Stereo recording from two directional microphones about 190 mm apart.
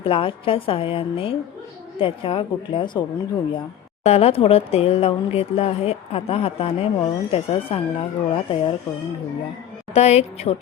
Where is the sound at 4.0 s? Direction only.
35° left (ahead or behind).